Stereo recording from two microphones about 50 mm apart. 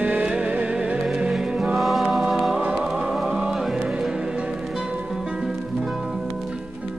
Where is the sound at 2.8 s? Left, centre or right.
Centre.